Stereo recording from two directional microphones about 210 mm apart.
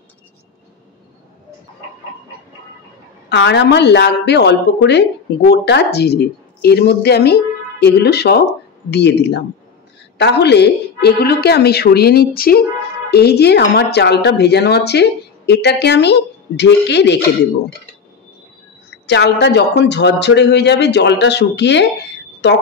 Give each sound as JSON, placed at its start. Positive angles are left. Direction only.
{"t": 3.3, "sound": "speech", "side_deg": 55}
{"t": 19.0, "sound": "speech", "side_deg": 55}